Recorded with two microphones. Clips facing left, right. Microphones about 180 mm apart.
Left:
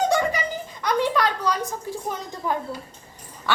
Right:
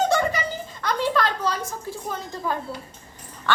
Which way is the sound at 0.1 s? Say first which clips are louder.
Even; 15° left (ahead or behind).